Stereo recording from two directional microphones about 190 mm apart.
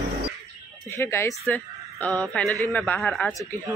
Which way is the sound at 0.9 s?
15° left (ahead or behind).